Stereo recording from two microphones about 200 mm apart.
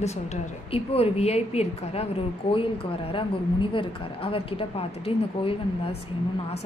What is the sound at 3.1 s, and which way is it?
A woman's voice, 25° left (ahead or behind).